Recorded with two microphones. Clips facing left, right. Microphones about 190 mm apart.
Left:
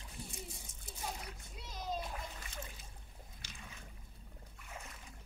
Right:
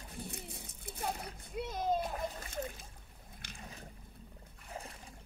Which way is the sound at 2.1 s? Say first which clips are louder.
Right 7 dB; 40° right (ahead or behind).